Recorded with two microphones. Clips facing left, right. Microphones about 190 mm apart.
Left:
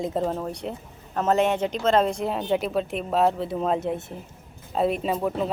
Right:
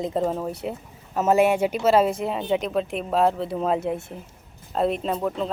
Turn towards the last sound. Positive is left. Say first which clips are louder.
# left 1 dB
turn(degrees=10)  # may be behind; listen again after turning